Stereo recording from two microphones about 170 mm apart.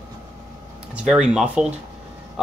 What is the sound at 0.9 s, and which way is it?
Speech, 5° right (ahead or behind).